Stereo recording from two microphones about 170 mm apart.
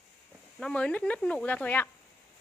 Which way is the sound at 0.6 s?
5° left (ahead or behind).